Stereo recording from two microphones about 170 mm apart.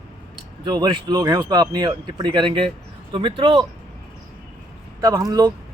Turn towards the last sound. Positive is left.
turn(degrees=-20)  # may be behind; listen again after turning